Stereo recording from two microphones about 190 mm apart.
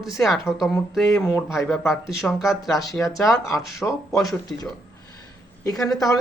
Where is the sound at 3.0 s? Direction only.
10° left (ahead or behind).